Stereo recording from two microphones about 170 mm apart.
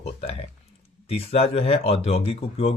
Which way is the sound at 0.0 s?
40° left (ahead or behind).